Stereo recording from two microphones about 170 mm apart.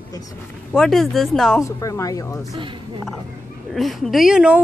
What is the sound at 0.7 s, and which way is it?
Speech, centre (ahead or behind).